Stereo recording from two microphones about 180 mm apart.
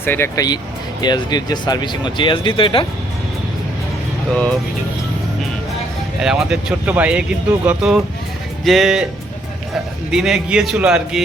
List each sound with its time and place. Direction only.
0.0 s speech: 10° left (ahead or behind); by 2.8 s 30° left (ahead or behind)
6.2 s speech: 5° right (ahead or behind)
10.1 s speech: 5° right (ahead or behind)